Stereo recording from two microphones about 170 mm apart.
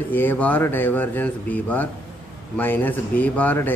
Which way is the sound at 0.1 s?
10° left (ahead or behind).